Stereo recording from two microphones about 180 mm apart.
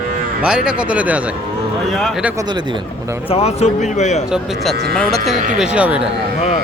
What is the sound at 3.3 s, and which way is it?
Speech, 35° left (ahead or behind).